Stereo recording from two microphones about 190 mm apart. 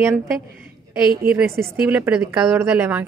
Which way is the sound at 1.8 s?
5° right (ahead or behind).